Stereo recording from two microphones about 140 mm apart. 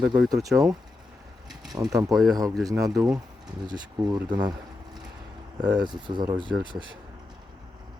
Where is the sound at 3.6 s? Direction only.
30° right (ahead or behind).